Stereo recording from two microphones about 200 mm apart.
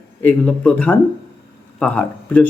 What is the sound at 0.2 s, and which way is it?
Speech, 5° left (ahead or behind).